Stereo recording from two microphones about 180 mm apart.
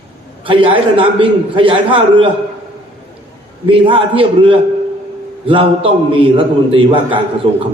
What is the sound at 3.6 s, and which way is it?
A man's voice, 30° right (ahead or behind).